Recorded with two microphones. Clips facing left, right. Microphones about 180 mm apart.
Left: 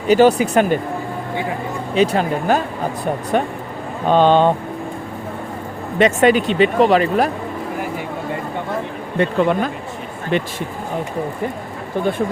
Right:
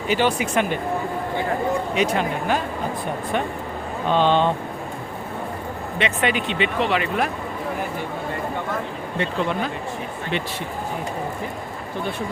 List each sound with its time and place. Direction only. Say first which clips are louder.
0.1 s speech: left 9 dB; 40° left (ahead or behind)
2.0 s speech: left 5 dB; 40° left (ahead or behind)
6.0 s speech: left 10 dB; 45° left (ahead or behind)
9.1 s speech: left 8 dB; 50° left (ahead or behind)